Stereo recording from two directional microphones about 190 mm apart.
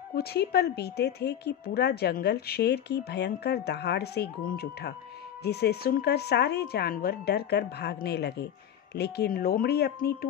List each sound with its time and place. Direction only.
0.1 s speech: 55° left (ahead or behind)